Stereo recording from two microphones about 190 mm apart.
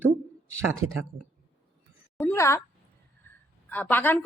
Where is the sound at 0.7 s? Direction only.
90° right.